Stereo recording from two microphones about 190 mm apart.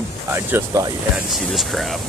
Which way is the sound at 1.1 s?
Centre (ahead or behind).